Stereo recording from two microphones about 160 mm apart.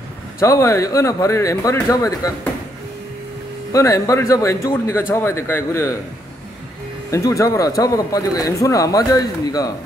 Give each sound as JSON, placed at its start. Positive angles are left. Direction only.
{"t": 0.4, "sound": "speech", "side_deg": 15}
{"t": 3.7, "sound": "a man's voice", "side_deg": 20}
{"t": 7.1, "sound": "speech", "side_deg": 20}